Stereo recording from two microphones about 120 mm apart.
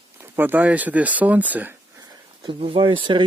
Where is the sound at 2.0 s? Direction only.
40° right (ahead or behind).